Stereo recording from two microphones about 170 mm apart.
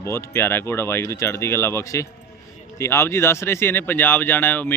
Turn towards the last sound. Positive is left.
turn(degrees=10)  # may be behind; listen again after turning